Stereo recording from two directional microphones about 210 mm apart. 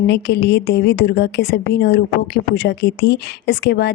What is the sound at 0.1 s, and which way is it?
A woman's voice, 55° left (ahead or behind).